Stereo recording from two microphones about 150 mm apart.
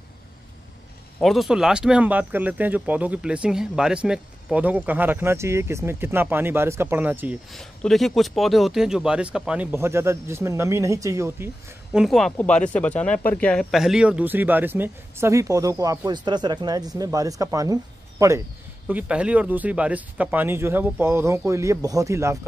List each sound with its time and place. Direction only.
1.2 s speech: centre (ahead or behind)
7.5 s speech: centre (ahead or behind); by 11.5 s 15° right (ahead or behind)
11.9 s speech: centre (ahead or behind); by 18.3 s 20° right (ahead or behind)
18.9 s speech: 10° right (ahead or behind)